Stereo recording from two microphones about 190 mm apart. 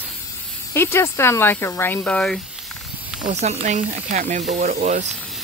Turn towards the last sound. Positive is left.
turn(degrees=-40)  # may be behind; listen again after turning